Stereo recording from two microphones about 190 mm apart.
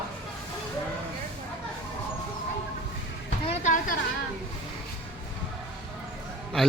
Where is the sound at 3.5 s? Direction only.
40° left (ahead or behind).